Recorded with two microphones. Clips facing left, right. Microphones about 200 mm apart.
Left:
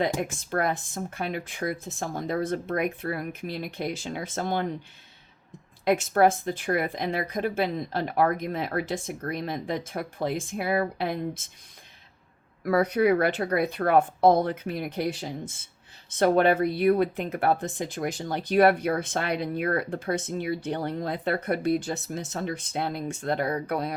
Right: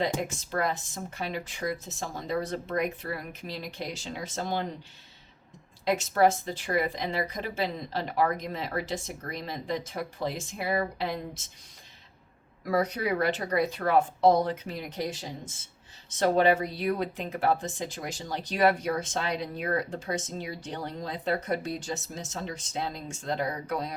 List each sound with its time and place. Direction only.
0.0 s speech: 55° left (ahead or behind)
5.8 s speech: 55° left (ahead or behind)
12.6 s speech: 55° left (ahead or behind)